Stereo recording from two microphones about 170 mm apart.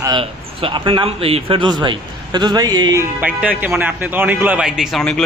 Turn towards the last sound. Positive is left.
turn(degrees=0)  # may be behind; listen again after turning